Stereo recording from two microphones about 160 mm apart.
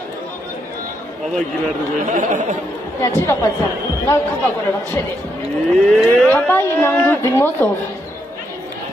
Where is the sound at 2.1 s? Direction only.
55° right (ahead or behind).